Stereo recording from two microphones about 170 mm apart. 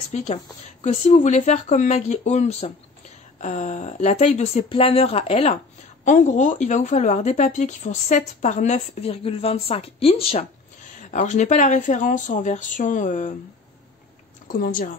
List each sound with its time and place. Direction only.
0.1 s a woman's voice: 45° left (ahead or behind)
6.0 s a woman's voice: 45° left (ahead or behind)
11.0 s a woman's voice: 45° left (ahead or behind)
14.5 s a woman's voice: 55° left (ahead or behind)